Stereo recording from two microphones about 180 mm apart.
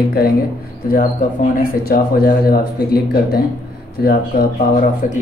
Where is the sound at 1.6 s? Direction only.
55° left (ahead or behind).